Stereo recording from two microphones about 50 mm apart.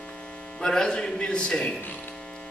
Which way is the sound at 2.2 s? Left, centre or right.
Left.